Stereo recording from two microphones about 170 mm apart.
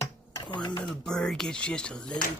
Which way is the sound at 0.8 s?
5° left (ahead or behind).